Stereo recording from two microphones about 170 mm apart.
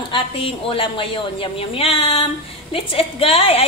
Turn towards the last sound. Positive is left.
turn(degrees=35)  # may be behind; listen again after turning